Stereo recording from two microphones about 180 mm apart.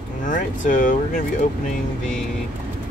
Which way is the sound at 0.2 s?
45° left (ahead or behind).